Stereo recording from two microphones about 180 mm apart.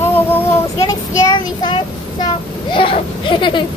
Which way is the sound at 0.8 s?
20° left (ahead or behind).